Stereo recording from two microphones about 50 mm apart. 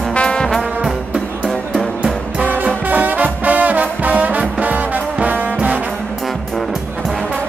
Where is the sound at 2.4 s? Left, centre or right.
Right.